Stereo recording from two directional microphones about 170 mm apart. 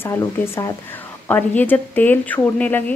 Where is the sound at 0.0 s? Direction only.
15° left (ahead or behind).